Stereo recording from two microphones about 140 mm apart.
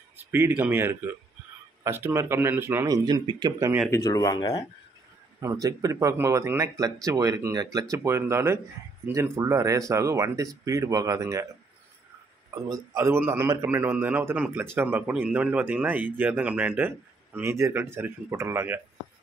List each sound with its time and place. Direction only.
0.2 s a man's voice: 15° right (ahead or behind)
3.1 s speech: 30° right (ahead or behind)
3.9 s speech: 25° left (ahead or behind)
5.4 s speech: 25° right (ahead or behind)
12.4 s a man's voice: 25° right (ahead or behind)